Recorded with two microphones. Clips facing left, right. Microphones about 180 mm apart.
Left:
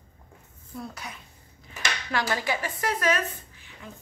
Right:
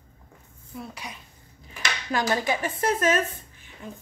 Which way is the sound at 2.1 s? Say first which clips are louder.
Right 3 dB; 20° right (ahead or behind).